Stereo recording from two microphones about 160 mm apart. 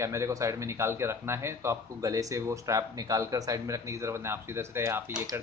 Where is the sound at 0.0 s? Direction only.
20° right (ahead or behind).